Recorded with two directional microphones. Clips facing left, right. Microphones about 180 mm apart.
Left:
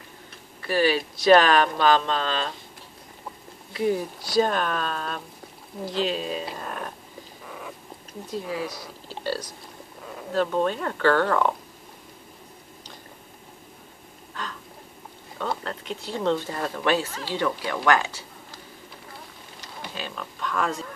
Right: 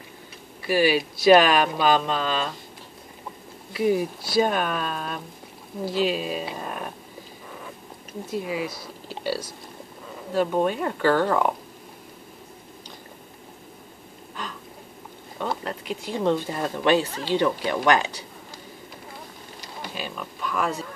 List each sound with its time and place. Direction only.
0.6 s speech: 10° right (ahead or behind)
3.7 s speech: 10° right (ahead or behind)
8.3 s speech: 10° right (ahead or behind)
14.4 s a sound: 15° right (ahead or behind)
15.6 s speech: 10° right (ahead or behind)
17.8 s a sound: 20° right (ahead or behind)
19.9 s speech: 10° right (ahead or behind)